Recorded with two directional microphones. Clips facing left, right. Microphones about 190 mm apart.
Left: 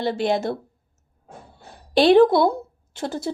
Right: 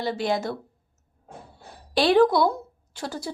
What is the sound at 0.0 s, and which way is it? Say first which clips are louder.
Speech: left 4 dB; 25° left (ahead or behind).